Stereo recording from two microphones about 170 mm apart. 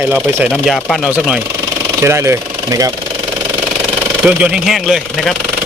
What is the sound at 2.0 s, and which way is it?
Speech, 15° right (ahead or behind).